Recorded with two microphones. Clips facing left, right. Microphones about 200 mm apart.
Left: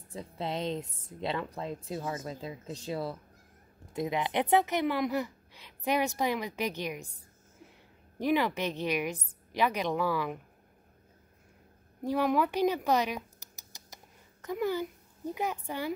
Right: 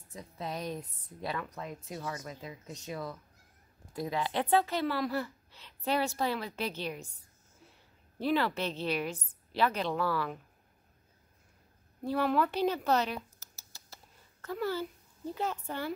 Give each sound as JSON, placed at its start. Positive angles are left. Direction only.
{"t": 0.1, "sound": "speech", "side_deg": 30}
{"t": 3.9, "sound": "speech", "side_deg": 20}
{"t": 8.2, "sound": "speech", "side_deg": 15}
{"t": 12.0, "sound": "a child's voice", "side_deg": 15}